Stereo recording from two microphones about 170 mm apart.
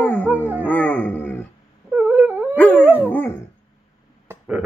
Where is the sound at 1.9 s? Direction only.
10° right (ahead or behind).